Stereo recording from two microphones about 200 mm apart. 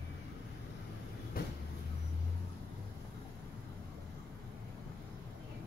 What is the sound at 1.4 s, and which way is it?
Train, 45° left (ahead or behind).